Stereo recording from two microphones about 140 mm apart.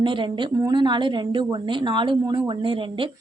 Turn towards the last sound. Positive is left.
turn(degrees=-35)  # may be behind; listen again after turning